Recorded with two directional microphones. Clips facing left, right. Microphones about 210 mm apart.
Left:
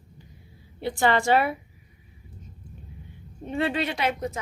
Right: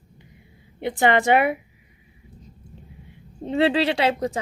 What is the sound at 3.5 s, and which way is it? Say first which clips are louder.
Speech: right 6 dB; 90° right.